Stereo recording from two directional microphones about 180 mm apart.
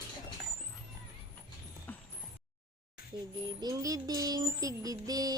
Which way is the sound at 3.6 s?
20° right (ahead or behind).